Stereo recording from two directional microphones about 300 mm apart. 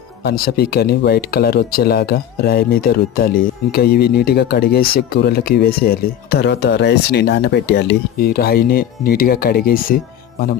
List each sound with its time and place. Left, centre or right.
0.2 s speech: left